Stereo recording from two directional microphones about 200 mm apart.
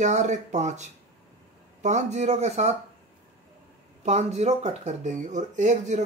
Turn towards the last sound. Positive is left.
turn(degrees=-35)  # may be behind; listen again after turning